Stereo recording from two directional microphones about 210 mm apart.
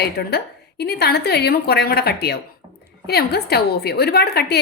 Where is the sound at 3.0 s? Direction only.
50° left (ahead or behind).